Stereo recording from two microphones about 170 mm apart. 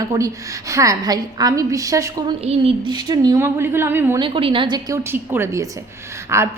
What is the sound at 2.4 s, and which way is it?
A woman's voice, 35° right (ahead or behind).